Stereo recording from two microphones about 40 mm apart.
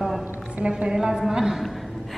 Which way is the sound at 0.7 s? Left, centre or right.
Right.